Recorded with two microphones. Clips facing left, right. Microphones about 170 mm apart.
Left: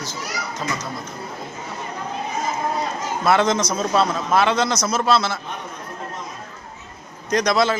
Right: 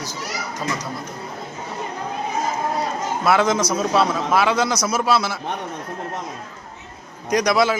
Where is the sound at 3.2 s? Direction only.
5° right (ahead or behind).